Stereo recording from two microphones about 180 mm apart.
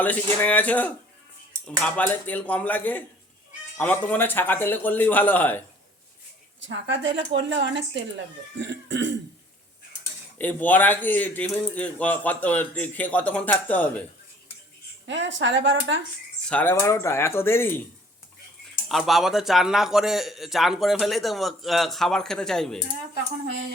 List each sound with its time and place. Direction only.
0.0 s speech: 10° left (ahead or behind)
6.6 s speech: 85° right
10.3 s speech: 10° left (ahead or behind)
15.0 s speech: 90° right
16.5 s speech: 10° left (ahead or behind)
18.9 s speech: centre (ahead or behind)